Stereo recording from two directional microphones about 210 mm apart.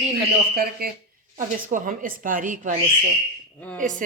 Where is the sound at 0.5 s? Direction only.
45° right (ahead or behind).